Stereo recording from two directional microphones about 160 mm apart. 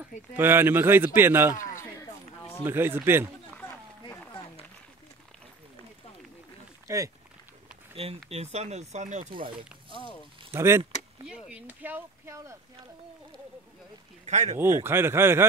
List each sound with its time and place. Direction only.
0.4 s speech: 15° right (ahead or behind)
1.5 s a sound: 20° left (ahead or behind)
2.6 s speech: 15° right (ahead or behind)
6.9 s speech: 20° right (ahead or behind)
7.9 s speech: 35° right (ahead or behind)
9.3 s speech: 30° right (ahead or behind)
10.5 s speech: 15° right (ahead or behind)
11.2 s speech: 5° right (ahead or behind)
14.2 s speech: 45° right (ahead or behind)
14.6 s speech: 15° right (ahead or behind)